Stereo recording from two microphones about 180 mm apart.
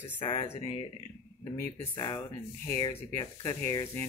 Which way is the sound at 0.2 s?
30° left (ahead or behind).